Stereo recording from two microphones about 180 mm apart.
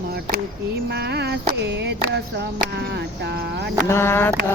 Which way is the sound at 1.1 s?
65° right (ahead or behind).